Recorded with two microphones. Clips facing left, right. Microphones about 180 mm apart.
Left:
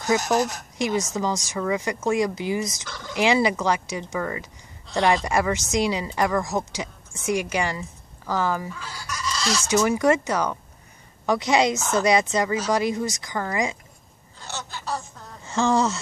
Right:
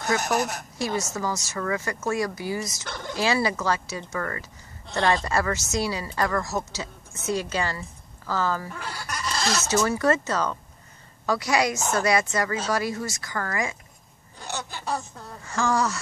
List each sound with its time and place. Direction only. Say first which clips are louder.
0.1 s speech: left 4 dB; 15° left (ahead or behind)
2.8 s speech: right 3 dB; 60° right (ahead or behind)
3.2 s speech: left 4 dB; 20° left (ahead or behind)
8.7 s speech: right 1 dB; 55° right (ahead or behind)
9.7 s speech: left 3 dB; 15° left (ahead or behind)
14.4 s a sound: right 1 dB; 15° right (ahead or behind)
15.4 s speech: left 3 dB; 25° left (ahead or behind)